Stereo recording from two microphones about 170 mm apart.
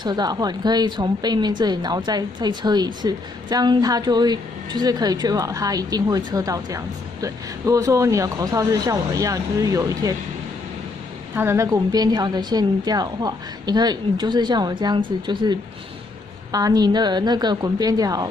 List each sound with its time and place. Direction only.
0.0 s a woman's voice: 25° right (ahead or behind)
11.3 s a woman's voice: 15° right (ahead or behind)
16.5 s a woman's voice: 20° right (ahead or behind)